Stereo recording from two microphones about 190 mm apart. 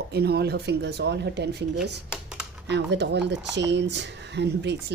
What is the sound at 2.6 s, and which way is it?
Speech, 65° right (ahead or behind).